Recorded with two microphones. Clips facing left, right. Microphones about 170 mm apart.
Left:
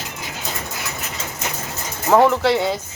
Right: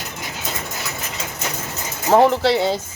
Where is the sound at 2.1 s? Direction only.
35° right (ahead or behind).